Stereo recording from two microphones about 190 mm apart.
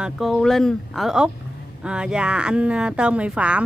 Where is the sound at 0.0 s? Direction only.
Centre (ahead or behind).